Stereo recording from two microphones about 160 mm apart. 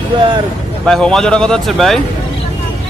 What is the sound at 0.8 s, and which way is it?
Speech, centre (ahead or behind).